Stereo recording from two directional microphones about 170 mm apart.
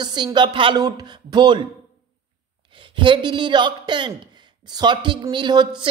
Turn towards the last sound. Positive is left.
turn(degrees=-25)  # may be behind; listen again after turning